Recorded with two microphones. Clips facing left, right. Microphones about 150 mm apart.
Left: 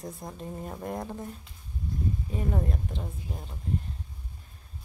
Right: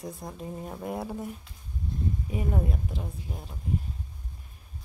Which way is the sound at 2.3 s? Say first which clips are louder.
Right 1 dB; 5° right (ahead or behind).